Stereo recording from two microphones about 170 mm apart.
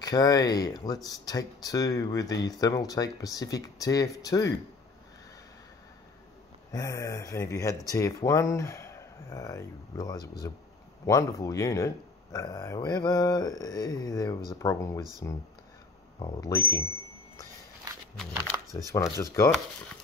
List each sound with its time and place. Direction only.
0.0 s speech: 20° left (ahead or behind)
6.7 s speech: 20° left (ahead or behind)
16.2 s speech: 25° left (ahead or behind)
18.1 s speech: 5° left (ahead or behind)
18.9 s speech: 20° left (ahead or behind)